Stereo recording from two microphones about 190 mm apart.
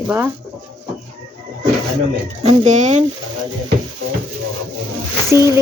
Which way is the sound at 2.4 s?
35° right (ahead or behind).